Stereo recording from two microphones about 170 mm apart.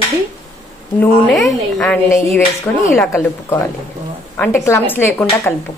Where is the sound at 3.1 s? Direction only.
15° left (ahead or behind).